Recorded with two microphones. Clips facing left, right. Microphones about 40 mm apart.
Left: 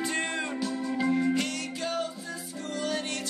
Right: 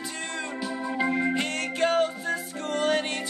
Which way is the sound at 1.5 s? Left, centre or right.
Right.